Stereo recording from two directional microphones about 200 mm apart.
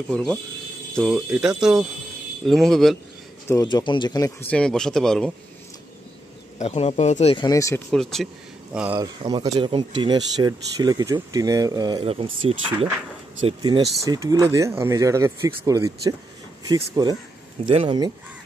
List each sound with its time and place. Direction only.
0.9 s speech: centre (ahead or behind)
3.4 s speech: 20° left (ahead or behind)
4.5 s speech: 5° left (ahead or behind)
6.6 s speech: 30° left (ahead or behind)
7.4 s speech: 15° left (ahead or behind)
7.9 s speech: centre (ahead or behind)
8.9 s speech: 20° right (ahead or behind)